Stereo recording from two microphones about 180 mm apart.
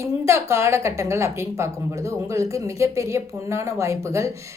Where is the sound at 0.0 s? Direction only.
15° right (ahead or behind).